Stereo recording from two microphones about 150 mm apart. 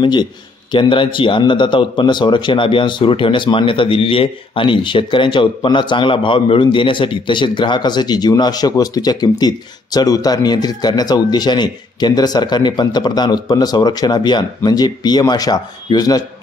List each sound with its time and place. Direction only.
0.0 s a man's voice: 30° left (ahead or behind)